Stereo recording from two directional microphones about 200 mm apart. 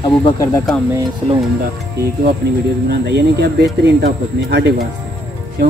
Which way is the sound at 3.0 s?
55° right (ahead or behind).